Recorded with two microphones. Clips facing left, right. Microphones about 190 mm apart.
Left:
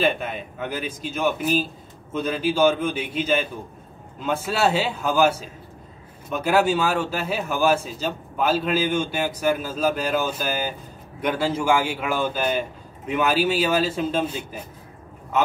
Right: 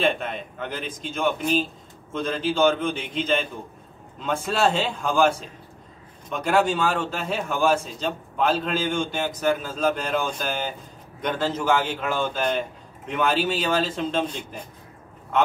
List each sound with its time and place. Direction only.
0.0 s a man's voice: 5° left (ahead or behind)